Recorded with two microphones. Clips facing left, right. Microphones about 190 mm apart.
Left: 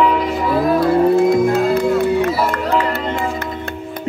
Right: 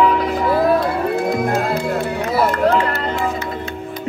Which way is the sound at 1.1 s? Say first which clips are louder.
Left 5 dB; 60° right (ahead or behind).